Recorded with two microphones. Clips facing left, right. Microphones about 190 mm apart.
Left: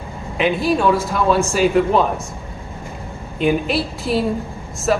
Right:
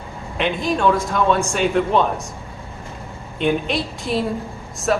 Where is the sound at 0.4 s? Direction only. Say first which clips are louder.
Left 3 dB; 5° left (ahead or behind).